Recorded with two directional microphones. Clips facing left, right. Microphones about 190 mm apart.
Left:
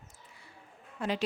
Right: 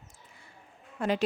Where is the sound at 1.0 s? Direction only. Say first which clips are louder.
Right 4 dB; 50° right (ahead or behind).